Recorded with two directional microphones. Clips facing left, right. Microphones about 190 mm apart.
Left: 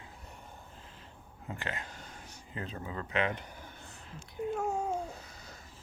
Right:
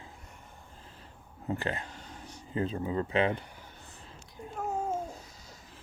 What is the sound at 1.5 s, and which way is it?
Speech, 35° right (ahead or behind).